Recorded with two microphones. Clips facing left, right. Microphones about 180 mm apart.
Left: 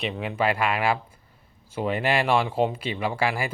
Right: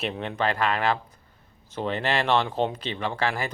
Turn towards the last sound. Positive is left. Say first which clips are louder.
# left 2 dB
turn(degrees=10)  # may be behind; listen again after turning